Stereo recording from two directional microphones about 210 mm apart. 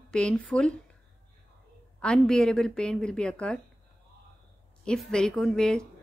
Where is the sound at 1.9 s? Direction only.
5° left (ahead or behind).